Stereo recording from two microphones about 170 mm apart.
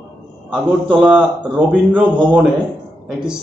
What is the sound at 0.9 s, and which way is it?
A man's voice, 5° right (ahead or behind).